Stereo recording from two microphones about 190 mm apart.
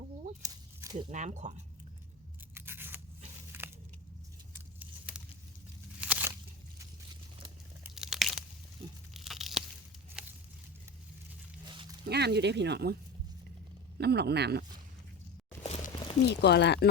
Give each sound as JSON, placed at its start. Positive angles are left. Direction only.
{"t": 0.4, "sound": "a sound", "side_deg": -20}
{"t": 0.9, "sound": "speech", "side_deg": -40}
{"t": 2.6, "sound": "scissors", "side_deg": -10}
{"t": 3.5, "sound": "a sound", "side_deg": -10}
{"t": 6.0, "sound": "a sound", "side_deg": -10}
{"t": 7.9, "sound": "crunch", "side_deg": 0}
{"t": 9.1, "sound": "tearing", "side_deg": 0}
{"t": 11.6, "sound": "dog", "side_deg": -25}
{"t": 12.0, "sound": "speech", "side_deg": -60}
{"t": 14.0, "sound": "speech", "side_deg": -60}
{"t": 15.6, "sound": "a sound", "side_deg": 35}
{"t": 16.3, "sound": "speech", "side_deg": 60}